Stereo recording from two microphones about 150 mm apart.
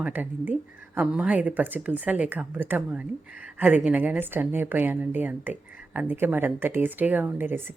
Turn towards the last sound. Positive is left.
turn(degrees=-15)  # may be behind; listen again after turning